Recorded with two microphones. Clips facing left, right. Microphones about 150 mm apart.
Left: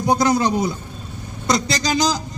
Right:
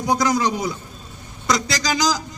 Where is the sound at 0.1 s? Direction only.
25° left (ahead or behind).